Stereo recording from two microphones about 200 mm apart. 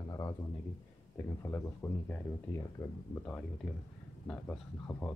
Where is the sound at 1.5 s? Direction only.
10° left (ahead or behind).